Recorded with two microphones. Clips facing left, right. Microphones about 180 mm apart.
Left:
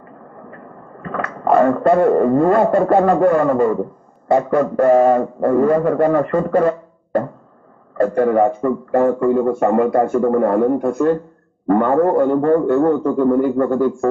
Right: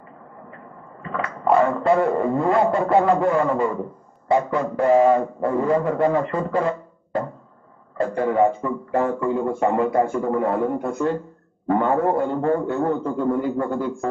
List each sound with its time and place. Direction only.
1.0 s a man's voice: 55° left (ahead or behind)